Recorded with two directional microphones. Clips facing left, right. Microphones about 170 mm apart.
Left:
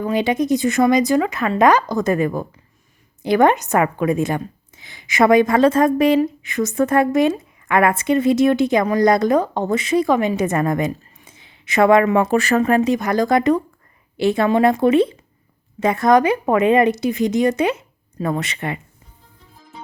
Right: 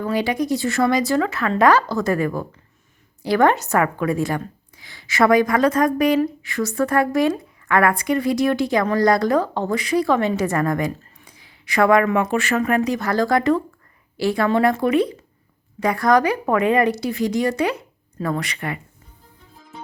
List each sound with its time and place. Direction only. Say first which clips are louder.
0.0 s a woman's voice: left 3 dB; 20° left (ahead or behind)